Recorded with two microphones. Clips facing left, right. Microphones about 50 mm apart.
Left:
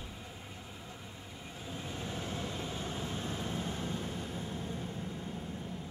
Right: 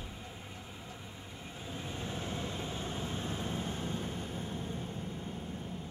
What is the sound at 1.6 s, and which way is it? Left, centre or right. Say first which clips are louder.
Train: even; centre.